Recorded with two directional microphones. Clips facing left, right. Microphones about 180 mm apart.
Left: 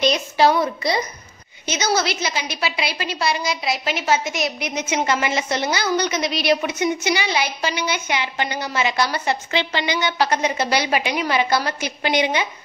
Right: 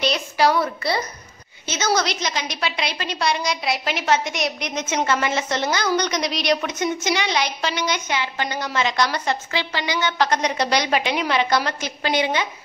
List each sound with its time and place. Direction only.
0.0 s a sound: 20° left (ahead or behind)
1.7 s a woman's voice: 10° left (ahead or behind)
9.5 s a woman's voice: 25° left (ahead or behind)
10.0 s a woman's voice: 5° left (ahead or behind)